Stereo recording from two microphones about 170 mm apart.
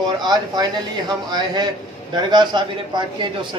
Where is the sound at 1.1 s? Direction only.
25° right (ahead or behind).